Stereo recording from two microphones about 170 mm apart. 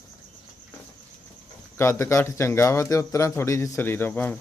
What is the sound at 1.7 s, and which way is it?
Speech, 15° left (ahead or behind).